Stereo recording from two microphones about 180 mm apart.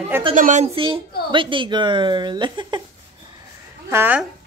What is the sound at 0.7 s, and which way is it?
Speech, 30° right (ahead or behind).